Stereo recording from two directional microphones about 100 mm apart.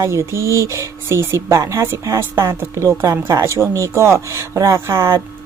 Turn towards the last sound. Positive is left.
turn(degrees=-25)  # may be behind; listen again after turning